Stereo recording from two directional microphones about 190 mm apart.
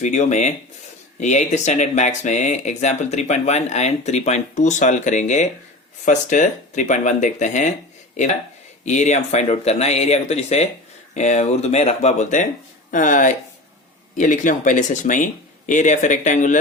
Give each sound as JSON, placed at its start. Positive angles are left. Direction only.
{"t": 0.0, "sound": "speech", "side_deg": 40}
{"t": 8.8, "sound": "speech", "side_deg": 40}